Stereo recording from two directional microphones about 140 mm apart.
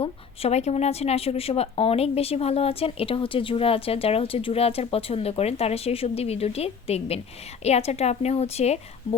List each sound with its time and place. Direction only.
0.0 s speech: 50° left (ahead or behind)